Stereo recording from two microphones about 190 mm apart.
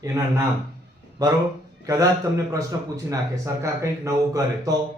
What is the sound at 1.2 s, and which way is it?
A man's voice, 20° right (ahead or behind).